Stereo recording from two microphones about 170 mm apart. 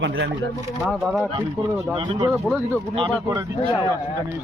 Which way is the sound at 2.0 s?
25° right (ahead or behind).